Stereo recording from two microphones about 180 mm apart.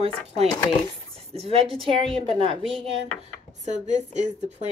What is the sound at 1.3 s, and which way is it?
A woman's voice, 35° right (ahead or behind).